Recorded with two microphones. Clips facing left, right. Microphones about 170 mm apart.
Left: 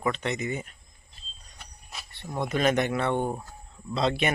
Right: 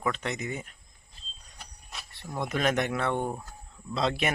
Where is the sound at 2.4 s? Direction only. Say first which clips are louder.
Left 3 dB; centre (ahead or behind).